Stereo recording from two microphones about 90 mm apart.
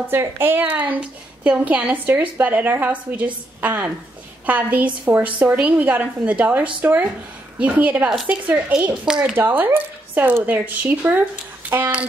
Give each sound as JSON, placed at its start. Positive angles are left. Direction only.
{"t": 0.1, "sound": "a woman's voice", "side_deg": -25}
{"t": 9.3, "sound": "speech", "side_deg": -20}